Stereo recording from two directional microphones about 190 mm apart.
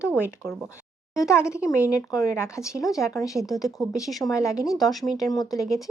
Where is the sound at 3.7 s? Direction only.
15° left (ahead or behind).